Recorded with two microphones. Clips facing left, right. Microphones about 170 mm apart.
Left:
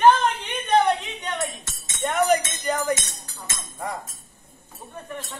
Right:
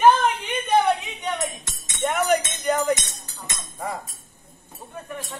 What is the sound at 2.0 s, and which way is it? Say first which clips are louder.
Speech: left 1 dB; centre (ahead or behind).